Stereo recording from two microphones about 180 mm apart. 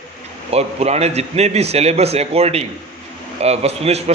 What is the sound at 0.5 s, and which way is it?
A man's voice, 35° right (ahead or behind).